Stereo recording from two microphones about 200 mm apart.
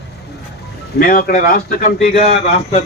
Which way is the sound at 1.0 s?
45° left (ahead or behind).